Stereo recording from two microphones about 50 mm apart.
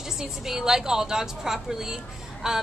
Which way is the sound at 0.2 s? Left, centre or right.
Centre.